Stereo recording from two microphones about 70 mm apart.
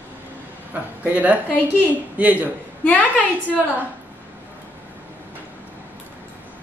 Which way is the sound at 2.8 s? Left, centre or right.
Left.